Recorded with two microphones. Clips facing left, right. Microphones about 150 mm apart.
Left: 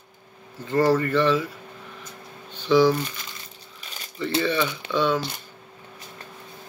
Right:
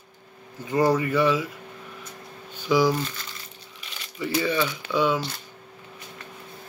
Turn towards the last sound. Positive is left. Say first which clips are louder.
# even
turn(degrees=-10)  # may be behind; listen again after turning